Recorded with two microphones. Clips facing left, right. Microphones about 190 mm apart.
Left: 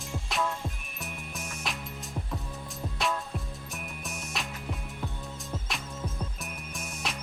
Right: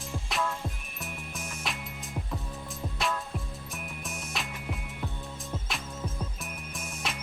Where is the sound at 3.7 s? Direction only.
Centre (ahead or behind).